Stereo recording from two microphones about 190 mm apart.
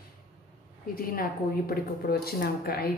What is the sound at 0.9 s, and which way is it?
A woman's voice, 50° left (ahead or behind).